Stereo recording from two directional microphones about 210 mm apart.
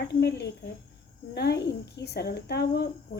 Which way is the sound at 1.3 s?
50° left (ahead or behind).